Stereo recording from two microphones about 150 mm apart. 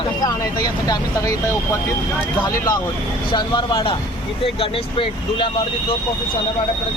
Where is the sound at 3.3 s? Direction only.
30° left (ahead or behind).